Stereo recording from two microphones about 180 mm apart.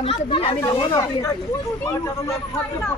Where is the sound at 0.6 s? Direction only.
20° left (ahead or behind).